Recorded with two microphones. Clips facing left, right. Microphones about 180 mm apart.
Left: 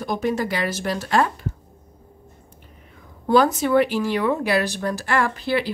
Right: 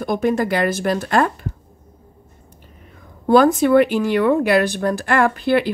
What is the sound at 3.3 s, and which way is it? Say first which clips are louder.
Speech: right 5 dB; 55° right (ahead or behind).